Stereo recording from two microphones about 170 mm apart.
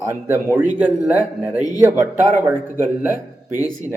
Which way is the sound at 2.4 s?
10° right (ahead or behind).